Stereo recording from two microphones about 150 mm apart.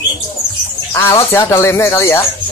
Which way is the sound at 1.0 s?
15° left (ahead or behind).